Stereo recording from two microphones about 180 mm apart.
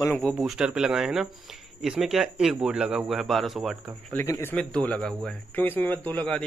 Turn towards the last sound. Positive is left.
turn(degrees=10)  # may be behind; listen again after turning